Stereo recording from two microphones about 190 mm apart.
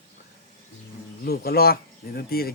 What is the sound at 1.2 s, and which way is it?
Speech, 55° left (ahead or behind).